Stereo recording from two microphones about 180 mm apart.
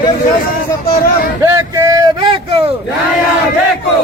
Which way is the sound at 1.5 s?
15° right (ahead or behind).